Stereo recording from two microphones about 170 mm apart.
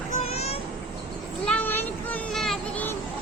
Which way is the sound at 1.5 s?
10° left (ahead or behind).